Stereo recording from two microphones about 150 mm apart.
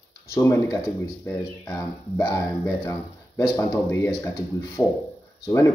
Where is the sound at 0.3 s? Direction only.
20° left (ahead or behind).